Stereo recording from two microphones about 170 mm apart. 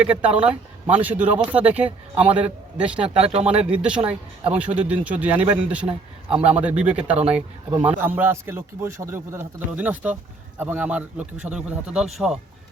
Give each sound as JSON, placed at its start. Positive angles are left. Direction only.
{"t": 0.3, "sound": "a man's voice", "side_deg": -5}
{"t": 6.3, "sound": "a man's voice", "side_deg": -35}
{"t": 6.6, "sound": "a man's voice", "side_deg": -5}